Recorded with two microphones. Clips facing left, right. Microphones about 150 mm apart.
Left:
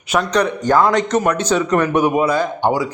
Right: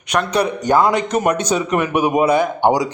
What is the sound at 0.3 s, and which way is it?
A man's voice, 10° right (ahead or behind).